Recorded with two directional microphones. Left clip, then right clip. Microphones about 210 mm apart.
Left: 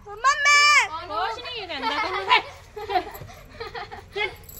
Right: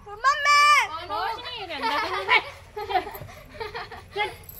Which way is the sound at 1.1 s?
45° left (ahead or behind).